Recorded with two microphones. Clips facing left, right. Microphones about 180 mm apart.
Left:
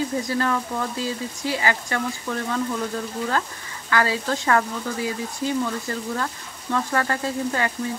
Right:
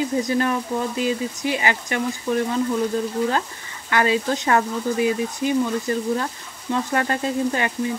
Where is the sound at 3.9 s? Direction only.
20° right (ahead or behind).